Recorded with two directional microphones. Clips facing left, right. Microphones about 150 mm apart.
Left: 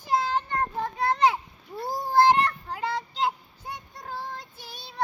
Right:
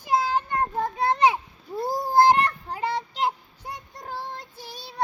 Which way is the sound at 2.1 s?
40° right (ahead or behind).